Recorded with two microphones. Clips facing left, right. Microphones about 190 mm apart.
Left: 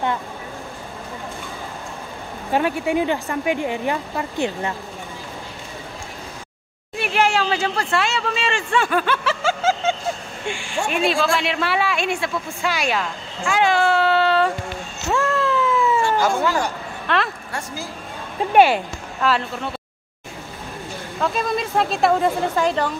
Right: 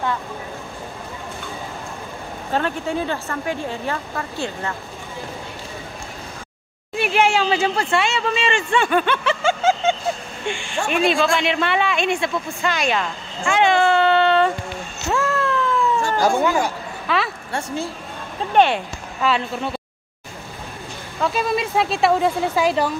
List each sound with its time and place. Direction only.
2.5 s speech: 10° left (ahead or behind)
7.0 s a sound: centre (ahead or behind)
10.4 s speech: 10° left (ahead or behind)
15.0 s cat: centre (ahead or behind)
16.0 s cat: 35° right (ahead or behind)
16.3 s speech: 15° right (ahead or behind)
17.1 s speech: centre (ahead or behind)
17.5 s a woman's voice: 30° right (ahead or behind)
18.5 s speech: 5° left (ahead or behind)
21.2 s speech: 5° right (ahead or behind)